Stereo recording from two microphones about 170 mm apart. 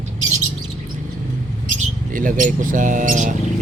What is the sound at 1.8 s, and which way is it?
Speech, 50° right (ahead or behind).